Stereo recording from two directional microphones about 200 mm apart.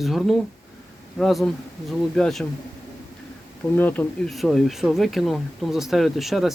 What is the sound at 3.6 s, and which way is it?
Speech, 10° left (ahead or behind).